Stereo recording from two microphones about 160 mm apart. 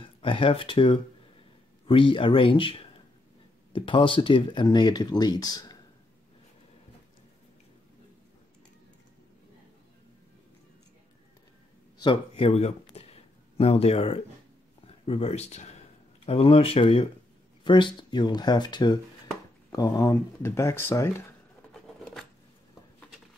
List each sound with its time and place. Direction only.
0.0 s speech: 30° left (ahead or behind)
12.0 s speech: 30° left (ahead or behind); by 21.1 s 15° left (ahead or behind)